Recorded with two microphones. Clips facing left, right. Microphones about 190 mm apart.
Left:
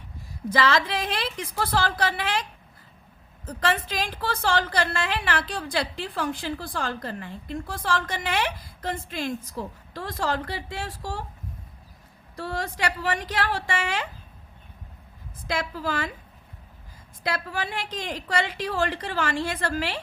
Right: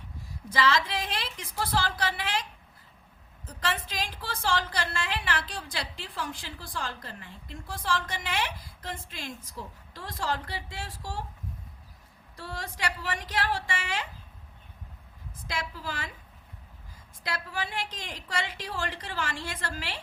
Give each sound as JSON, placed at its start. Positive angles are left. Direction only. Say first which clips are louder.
{"t": 0.5, "sound": "a woman's voice", "louder": "left 3 dB", "side_deg": 65}
{"t": 12.4, "sound": "a woman's voice", "louder": "left 7 dB", "side_deg": 70}
{"t": 15.4, "sound": "a woman's voice", "louder": "left 7 dB", "side_deg": 70}
{"t": 17.2, "sound": "a woman's voice", "louder": "left 5 dB", "side_deg": 70}